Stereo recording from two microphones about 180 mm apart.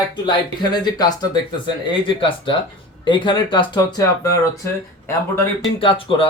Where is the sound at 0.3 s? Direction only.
25° left (ahead or behind).